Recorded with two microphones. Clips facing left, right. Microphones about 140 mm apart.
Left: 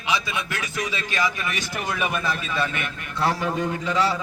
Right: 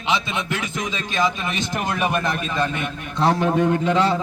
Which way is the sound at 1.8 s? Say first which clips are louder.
Right 3 dB; 55° right (ahead or behind).